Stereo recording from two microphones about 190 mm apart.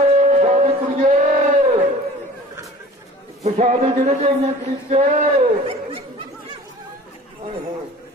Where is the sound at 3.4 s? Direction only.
40° right (ahead or behind).